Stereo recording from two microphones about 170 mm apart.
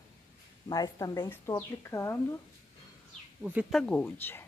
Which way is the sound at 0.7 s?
25° left (ahead or behind).